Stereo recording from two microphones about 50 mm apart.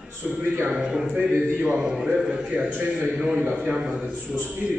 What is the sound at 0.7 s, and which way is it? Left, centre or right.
A man's voice, centre.